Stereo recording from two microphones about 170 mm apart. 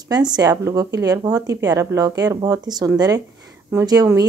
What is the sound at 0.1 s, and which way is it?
A woman's voice, 25° right (ahead or behind).